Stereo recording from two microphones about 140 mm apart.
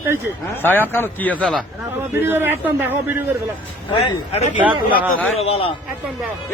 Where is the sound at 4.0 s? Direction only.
40° left (ahead or behind).